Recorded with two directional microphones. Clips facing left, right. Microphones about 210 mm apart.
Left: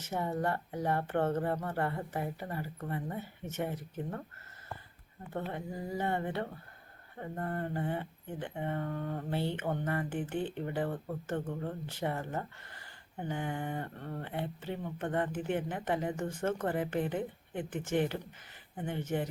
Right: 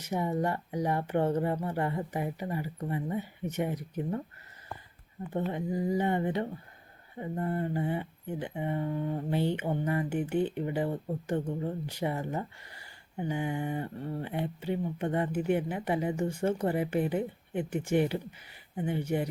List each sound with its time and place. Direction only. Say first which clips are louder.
0.0 s speech: right 3 dB; 15° right (ahead or behind)
5.5 s speech: right 8 dB; 15° right (ahead or behind)